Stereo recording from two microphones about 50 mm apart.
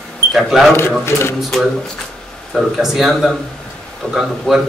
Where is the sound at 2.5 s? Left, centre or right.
Centre.